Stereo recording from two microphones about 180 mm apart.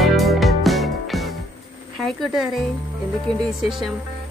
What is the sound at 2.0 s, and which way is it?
A woman's voice, centre (ahead or behind).